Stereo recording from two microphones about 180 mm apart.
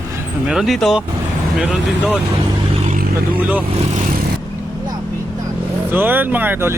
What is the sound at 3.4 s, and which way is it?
Speech, 10° right (ahead or behind).